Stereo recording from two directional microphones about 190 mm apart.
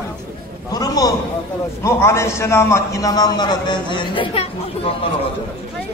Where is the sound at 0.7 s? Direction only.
20° left (ahead or behind).